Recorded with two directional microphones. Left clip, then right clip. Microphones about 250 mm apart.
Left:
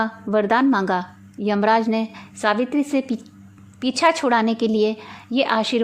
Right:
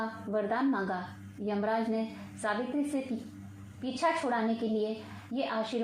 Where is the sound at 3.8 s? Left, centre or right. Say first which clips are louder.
Left 12 dB; left.